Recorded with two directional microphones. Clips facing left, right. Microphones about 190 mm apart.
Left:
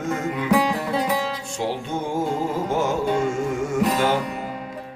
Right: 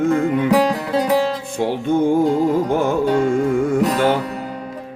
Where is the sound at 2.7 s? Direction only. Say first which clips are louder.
Right 5 dB; 55° right (ahead or behind).